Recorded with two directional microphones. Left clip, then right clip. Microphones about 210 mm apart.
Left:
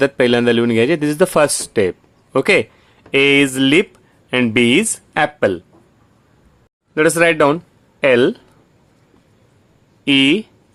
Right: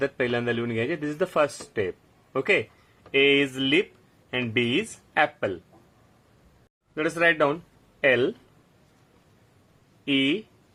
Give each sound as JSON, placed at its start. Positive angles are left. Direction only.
{"t": 0.0, "sound": "speech", "side_deg": 40}
{"t": 6.9, "sound": "speech", "side_deg": 35}
{"t": 10.0, "sound": "speech", "side_deg": 35}